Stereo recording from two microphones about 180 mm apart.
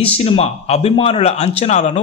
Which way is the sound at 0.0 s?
35° left (ahead or behind).